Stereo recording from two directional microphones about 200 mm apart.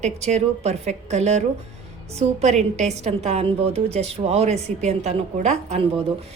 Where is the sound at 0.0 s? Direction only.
35° right (ahead or behind).